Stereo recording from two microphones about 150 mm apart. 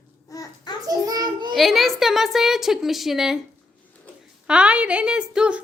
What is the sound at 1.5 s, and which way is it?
A woman's voice, centre (ahead or behind).